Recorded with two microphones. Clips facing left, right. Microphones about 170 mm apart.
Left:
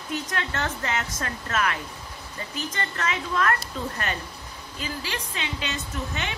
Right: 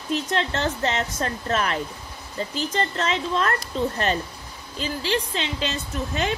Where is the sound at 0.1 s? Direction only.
30° right (ahead or behind).